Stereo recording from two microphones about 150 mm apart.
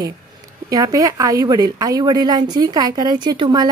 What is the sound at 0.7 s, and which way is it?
Speech, 25° right (ahead or behind).